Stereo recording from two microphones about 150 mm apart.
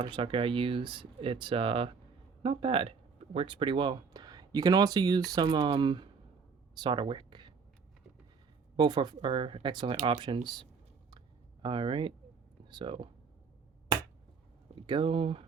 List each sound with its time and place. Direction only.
0.0 s speech: 35° right (ahead or behind)
6.7 s a sound: 30° right (ahead or behind)
8.7 s speech: 30° right (ahead or behind)
14.8 s speech: 35° right (ahead or behind)